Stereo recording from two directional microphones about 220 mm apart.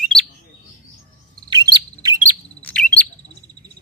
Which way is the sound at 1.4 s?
20° right (ahead or behind).